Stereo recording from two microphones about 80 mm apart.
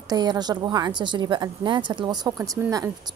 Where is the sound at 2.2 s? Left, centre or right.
Right.